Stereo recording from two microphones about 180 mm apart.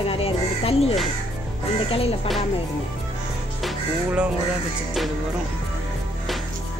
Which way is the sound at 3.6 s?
5° right (ahead or behind).